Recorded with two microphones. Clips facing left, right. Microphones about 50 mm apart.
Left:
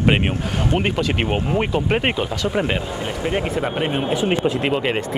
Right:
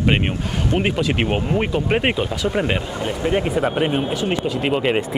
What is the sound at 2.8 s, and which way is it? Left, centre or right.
Speech, centre.